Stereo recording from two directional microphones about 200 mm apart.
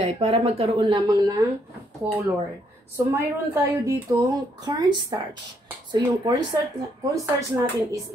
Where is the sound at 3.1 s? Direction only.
15° right (ahead or behind).